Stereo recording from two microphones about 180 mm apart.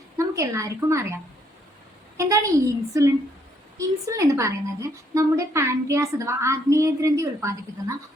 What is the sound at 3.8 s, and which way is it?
A woman's voice, 15° right (ahead or behind).